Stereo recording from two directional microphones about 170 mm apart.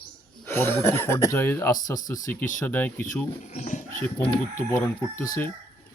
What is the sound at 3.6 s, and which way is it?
Speech, 45° left (ahead or behind).